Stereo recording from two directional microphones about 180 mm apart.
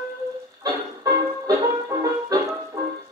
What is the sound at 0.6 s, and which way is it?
Music, 20° right (ahead or behind).